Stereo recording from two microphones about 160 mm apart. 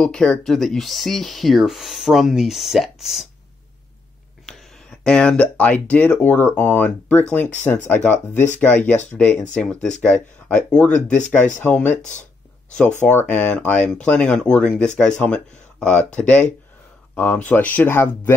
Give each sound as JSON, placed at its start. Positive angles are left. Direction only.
{"t": 0.0, "sound": "speech", "side_deg": 5}
{"t": 5.0, "sound": "speech", "side_deg": 5}
{"t": 12.0, "sound": "speech", "side_deg": 50}
{"t": 13.0, "sound": "speech", "side_deg": 10}